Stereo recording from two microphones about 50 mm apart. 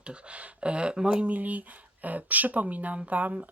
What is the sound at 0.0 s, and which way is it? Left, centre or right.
Speech, right.